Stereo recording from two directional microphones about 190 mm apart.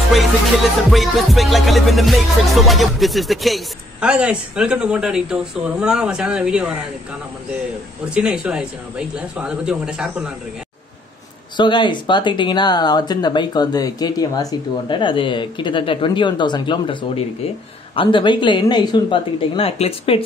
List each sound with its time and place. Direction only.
0.8 s music: centre (ahead or behind)
8.1 s music: 5° right (ahead or behind)
11.5 s speech: 25° left (ahead or behind)